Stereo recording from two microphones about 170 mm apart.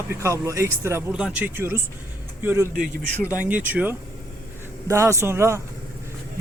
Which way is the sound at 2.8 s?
55° right (ahead or behind).